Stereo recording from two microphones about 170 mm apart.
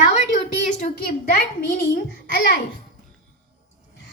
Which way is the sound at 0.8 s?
60° left (ahead or behind).